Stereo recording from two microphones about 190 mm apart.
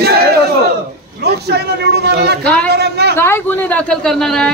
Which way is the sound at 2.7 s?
60° right (ahead or behind).